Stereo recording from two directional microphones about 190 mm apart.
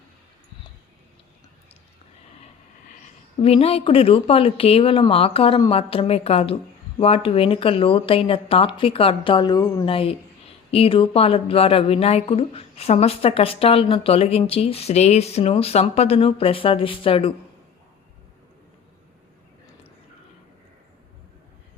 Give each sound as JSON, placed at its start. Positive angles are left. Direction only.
{"t": 3.4, "sound": "a woman's voice", "side_deg": 30}